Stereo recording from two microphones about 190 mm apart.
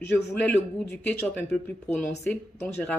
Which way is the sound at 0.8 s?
5° left (ahead or behind).